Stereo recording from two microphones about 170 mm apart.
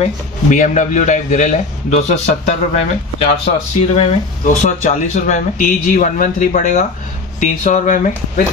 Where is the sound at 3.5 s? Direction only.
40° left (ahead or behind).